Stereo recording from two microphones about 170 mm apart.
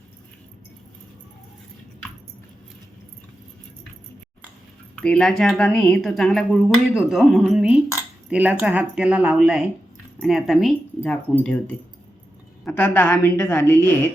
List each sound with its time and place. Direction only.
4.9 s a woman's voice: 5° left (ahead or behind)
12.6 s a woman's voice: 10° left (ahead or behind)